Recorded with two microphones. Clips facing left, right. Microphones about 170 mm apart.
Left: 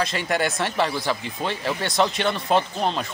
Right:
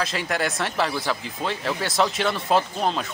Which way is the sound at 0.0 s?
Centre (ahead or behind).